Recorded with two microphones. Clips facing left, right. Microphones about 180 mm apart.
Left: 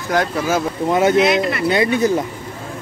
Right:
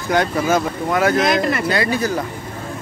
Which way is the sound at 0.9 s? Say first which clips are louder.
Left 2 dB; 25° left (ahead or behind).